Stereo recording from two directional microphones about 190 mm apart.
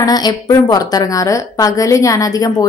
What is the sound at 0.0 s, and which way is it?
A woman's voice, 20° left (ahead or behind).